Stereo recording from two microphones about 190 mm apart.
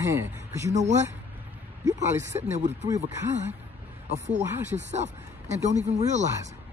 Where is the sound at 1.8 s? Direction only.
15° right (ahead or behind).